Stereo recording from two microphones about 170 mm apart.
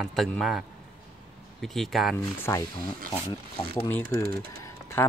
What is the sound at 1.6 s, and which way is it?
Speech, centre (ahead or behind).